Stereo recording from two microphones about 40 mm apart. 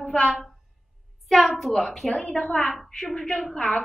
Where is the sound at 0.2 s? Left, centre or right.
Centre.